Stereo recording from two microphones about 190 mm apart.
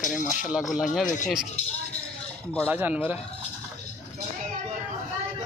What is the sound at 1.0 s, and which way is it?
Speech, 40° left (ahead or behind).